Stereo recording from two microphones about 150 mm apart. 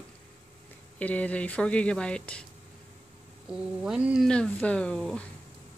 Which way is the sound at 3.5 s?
5° right (ahead or behind).